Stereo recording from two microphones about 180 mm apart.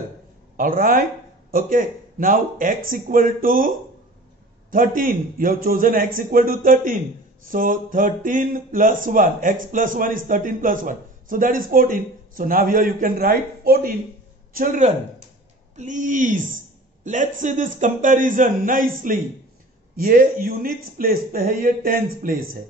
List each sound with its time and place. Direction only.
0.6 s a man's voice: 50° right (ahead or behind)
20.0 s a man's voice: 50° right (ahead or behind)